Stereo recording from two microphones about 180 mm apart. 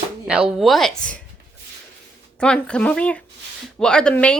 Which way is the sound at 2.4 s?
5° left (ahead or behind).